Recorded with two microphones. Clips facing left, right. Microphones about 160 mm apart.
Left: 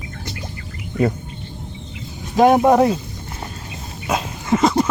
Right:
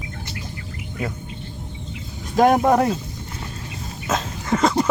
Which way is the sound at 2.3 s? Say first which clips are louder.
Left 3 dB; 5° left (ahead or behind).